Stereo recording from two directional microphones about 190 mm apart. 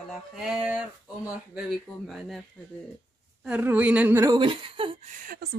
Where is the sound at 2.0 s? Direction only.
Centre (ahead or behind).